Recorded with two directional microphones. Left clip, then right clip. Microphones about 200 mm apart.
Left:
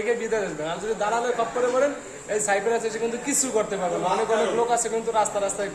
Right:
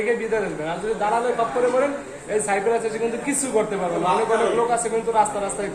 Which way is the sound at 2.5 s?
20° left (ahead or behind).